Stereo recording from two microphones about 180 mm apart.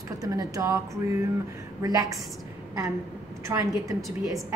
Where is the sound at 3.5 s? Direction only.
15° right (ahead or behind).